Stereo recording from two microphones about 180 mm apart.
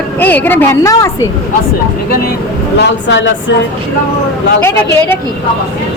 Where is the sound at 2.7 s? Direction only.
75° left (ahead or behind).